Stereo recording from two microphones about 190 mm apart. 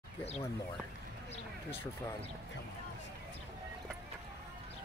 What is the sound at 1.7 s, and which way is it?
Speech, 10° left (ahead or behind).